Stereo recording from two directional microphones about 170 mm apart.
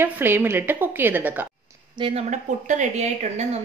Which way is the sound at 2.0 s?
35° right (ahead or behind).